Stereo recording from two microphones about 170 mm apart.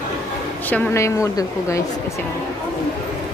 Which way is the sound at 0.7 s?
15° left (ahead or behind).